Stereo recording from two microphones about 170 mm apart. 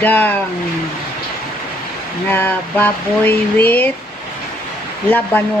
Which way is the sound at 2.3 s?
10° left (ahead or behind).